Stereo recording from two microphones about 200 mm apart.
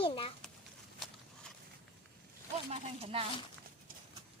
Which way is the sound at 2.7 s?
30° right (ahead or behind).